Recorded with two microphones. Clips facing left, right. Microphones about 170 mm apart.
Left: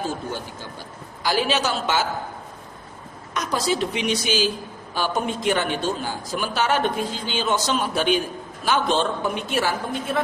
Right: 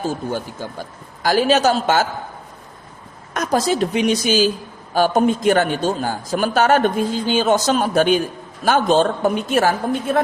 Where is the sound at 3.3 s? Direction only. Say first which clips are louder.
Right 5 dB; 45° right (ahead or behind).